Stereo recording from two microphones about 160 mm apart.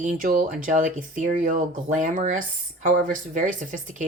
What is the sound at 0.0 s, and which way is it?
A woman's voice, 55° right (ahead or behind).